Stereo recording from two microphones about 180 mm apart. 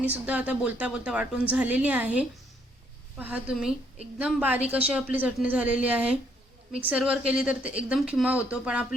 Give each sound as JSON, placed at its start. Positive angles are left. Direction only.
{"t": 0.0, "sound": "a woman's voice", "side_deg": -5}